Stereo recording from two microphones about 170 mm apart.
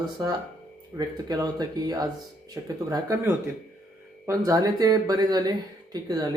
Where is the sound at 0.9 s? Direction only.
25° right (ahead or behind).